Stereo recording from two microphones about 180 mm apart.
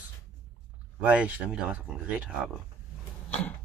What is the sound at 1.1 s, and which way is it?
Speech, 5° right (ahead or behind).